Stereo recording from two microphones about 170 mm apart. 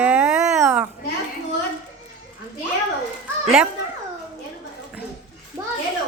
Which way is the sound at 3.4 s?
Centre (ahead or behind).